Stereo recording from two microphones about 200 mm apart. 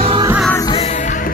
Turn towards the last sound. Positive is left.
turn(degrees=15)  # may be behind; listen again after turning